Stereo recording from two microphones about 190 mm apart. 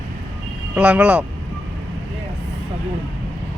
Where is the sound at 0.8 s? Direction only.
5° right (ahead or behind).